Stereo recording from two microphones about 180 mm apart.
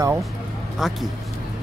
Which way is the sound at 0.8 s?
Centre (ahead or behind).